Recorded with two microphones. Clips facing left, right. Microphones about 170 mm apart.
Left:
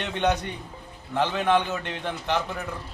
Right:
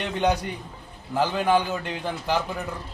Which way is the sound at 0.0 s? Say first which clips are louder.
Right 1 dB; 10° right (ahead or behind).